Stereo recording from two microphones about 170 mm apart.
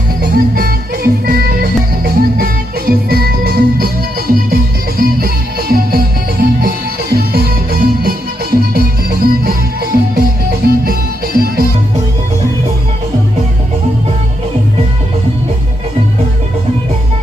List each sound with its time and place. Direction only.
0.2 s music: 60° right (ahead or behind)